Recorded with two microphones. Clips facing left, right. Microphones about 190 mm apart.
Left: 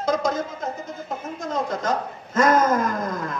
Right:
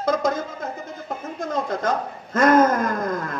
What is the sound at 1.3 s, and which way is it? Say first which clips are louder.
Speech: right 1 dB; 55° right (ahead or behind).